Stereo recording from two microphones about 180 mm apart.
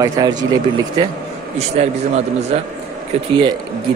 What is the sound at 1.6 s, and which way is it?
A man's voice, 35° right (ahead or behind).